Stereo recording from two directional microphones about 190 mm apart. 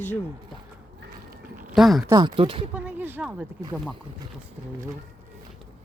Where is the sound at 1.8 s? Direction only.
Centre (ahead or behind).